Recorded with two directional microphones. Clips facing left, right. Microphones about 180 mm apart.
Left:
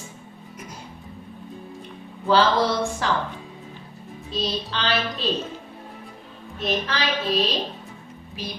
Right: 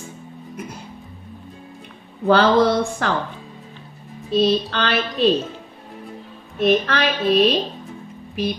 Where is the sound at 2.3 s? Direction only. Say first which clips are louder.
Right 5 dB; 55° right (ahead or behind).